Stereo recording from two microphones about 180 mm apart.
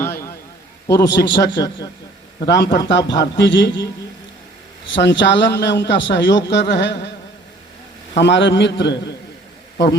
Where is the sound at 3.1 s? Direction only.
75° left (ahead or behind).